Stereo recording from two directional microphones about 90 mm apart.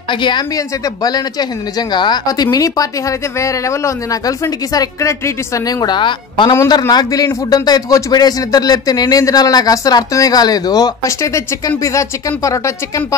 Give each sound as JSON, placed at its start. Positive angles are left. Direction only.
{"t": 0.1, "sound": "a woman's voice", "side_deg": 60}
{"t": 1.0, "sound": "speech", "side_deg": 50}
{"t": 6.9, "sound": "speech", "side_deg": 45}